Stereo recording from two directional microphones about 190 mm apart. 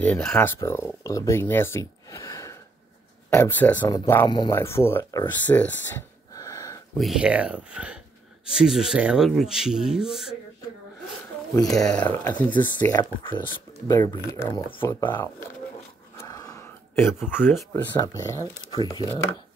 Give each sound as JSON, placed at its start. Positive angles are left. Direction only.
{"t": 0.0, "sound": "speech", "side_deg": 5}
{"t": 5.9, "sound": "gasp", "side_deg": 15}
{"t": 7.0, "sound": "speech", "side_deg": -5}
{"t": 12.1, "sound": "speech", "side_deg": 10}
{"t": 12.7, "sound": "speech", "side_deg": 20}
{"t": 16.2, "sound": "a sound", "side_deg": 20}
{"t": 17.3, "sound": "speech", "side_deg": 10}